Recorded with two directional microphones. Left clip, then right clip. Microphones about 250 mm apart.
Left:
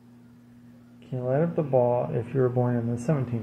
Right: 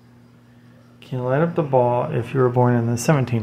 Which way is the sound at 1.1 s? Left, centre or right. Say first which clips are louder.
Right 5 dB; centre.